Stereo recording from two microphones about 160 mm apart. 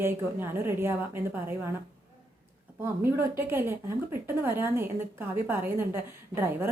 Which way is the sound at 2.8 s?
15° right (ahead or behind).